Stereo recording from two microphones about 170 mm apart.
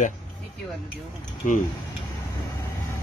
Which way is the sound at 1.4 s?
45° left (ahead or behind).